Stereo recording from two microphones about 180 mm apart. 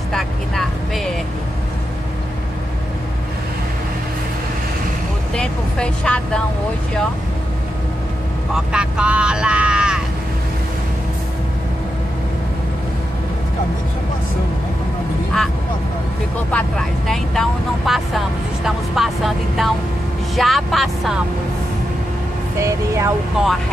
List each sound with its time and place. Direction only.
0.1 s vehicle: centre (ahead or behind)
5.3 s speech: 5° left (ahead or behind)
8.5 s speech: 5° right (ahead or behind)
16.5 s speech: centre (ahead or behind)
22.6 s speech: 15° right (ahead or behind)